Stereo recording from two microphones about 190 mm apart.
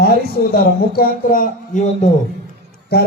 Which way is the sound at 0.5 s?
50° left (ahead or behind).